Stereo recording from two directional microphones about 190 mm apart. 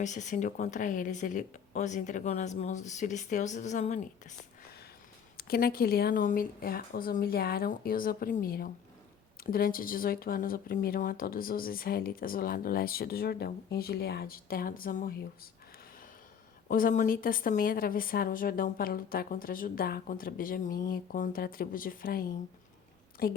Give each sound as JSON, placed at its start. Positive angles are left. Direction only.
{"t": 0.0, "sound": "a woman's voice", "side_deg": 40}
{"t": 5.4, "sound": "speech", "side_deg": 50}
{"t": 16.6, "sound": "speech", "side_deg": 45}